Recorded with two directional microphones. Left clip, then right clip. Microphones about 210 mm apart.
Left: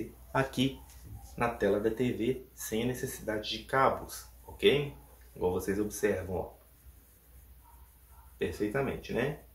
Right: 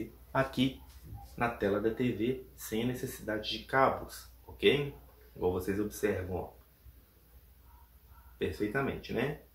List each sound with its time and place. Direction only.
0.3 s speech: 20° left (ahead or behind)
8.4 s speech: 15° left (ahead or behind)